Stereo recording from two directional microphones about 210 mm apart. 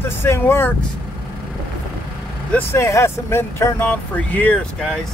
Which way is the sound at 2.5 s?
15° left (ahead or behind).